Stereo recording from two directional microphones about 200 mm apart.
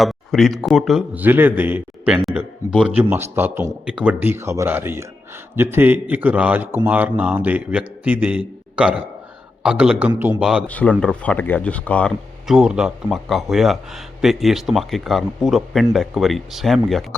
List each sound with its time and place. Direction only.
0.0 s a man's voice: centre (ahead or behind)
10.7 s speech: 5° left (ahead or behind)